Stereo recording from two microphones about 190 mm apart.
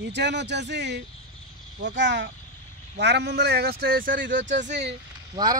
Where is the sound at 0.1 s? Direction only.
65° right (ahead or behind); by 4.4 s 45° right (ahead or behind).